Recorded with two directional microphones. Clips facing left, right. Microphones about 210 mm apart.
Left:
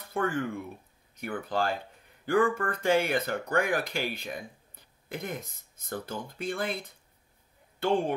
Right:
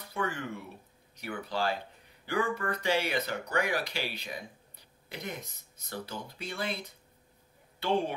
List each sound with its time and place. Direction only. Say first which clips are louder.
0.1 s speech: left 5 dB; 50° left (ahead or behind)